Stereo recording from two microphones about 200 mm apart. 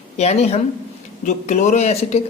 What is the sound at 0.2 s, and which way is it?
Speech, 30° left (ahead or behind).